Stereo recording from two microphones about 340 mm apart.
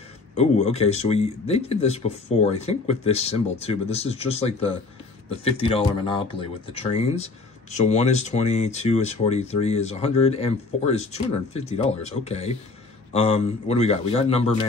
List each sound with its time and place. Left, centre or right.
0.4 s speech: centre